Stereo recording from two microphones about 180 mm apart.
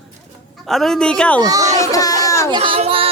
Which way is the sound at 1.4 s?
20° right (ahead or behind).